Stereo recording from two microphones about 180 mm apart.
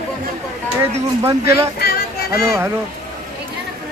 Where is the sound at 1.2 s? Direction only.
15° right (ahead or behind).